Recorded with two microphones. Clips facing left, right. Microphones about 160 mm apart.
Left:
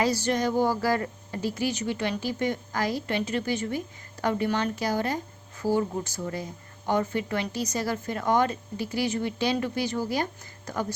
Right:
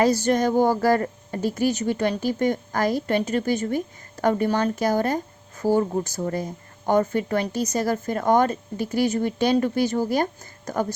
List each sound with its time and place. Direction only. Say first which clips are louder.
0.0 s speech: right 5 dB; 45° right (ahead or behind)